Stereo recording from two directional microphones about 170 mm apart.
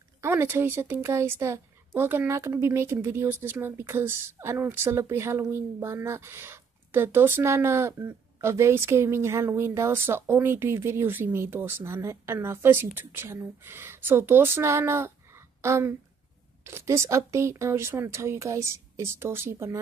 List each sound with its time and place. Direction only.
0.2 s speech: 15° right (ahead or behind)